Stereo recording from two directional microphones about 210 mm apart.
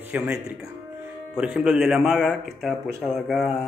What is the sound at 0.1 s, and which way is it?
Speech, 5° right (ahead or behind).